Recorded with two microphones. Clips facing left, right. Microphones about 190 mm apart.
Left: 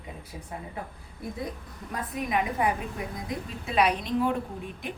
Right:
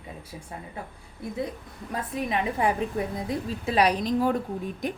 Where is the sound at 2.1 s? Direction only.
30° right (ahead or behind).